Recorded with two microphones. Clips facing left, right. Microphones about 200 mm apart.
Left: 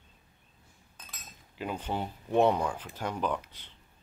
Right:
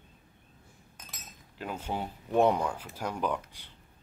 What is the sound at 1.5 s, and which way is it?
Speech, centre (ahead or behind).